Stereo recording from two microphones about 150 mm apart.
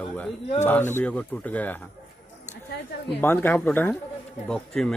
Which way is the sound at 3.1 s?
10° left (ahead or behind).